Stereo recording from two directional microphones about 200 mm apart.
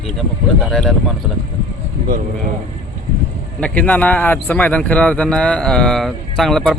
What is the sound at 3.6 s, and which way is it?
A man's voice, 5° left (ahead or behind).